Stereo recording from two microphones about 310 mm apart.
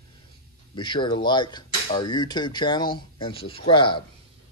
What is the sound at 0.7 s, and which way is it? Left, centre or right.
Speech, centre.